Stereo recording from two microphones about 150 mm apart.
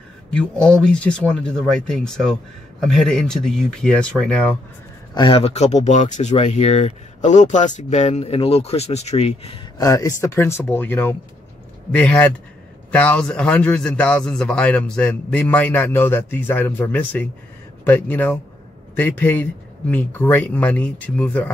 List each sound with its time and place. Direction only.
0.3 s speech: 5° left (ahead or behind)
5.1 s speech: 35° left (ahead or behind)
9.8 s a man's voice: 25° left (ahead or behind)